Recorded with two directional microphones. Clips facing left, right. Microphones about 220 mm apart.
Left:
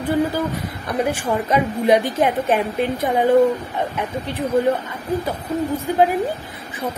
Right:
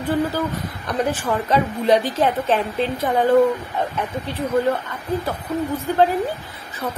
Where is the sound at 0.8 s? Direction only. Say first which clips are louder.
Left 1 dB; 10° left (ahead or behind).